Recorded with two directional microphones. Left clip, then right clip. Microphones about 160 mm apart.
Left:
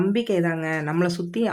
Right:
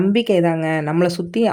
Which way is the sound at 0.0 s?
30° right (ahead or behind).